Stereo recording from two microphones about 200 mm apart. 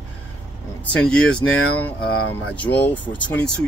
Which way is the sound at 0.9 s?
5° left (ahead or behind).